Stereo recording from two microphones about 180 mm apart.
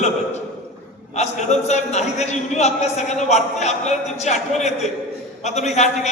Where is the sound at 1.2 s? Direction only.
40° left (ahead or behind).